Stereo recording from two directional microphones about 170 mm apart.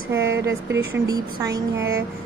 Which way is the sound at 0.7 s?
20° right (ahead or behind).